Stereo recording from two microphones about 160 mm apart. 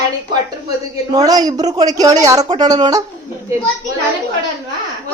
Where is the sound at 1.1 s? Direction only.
25° right (ahead or behind).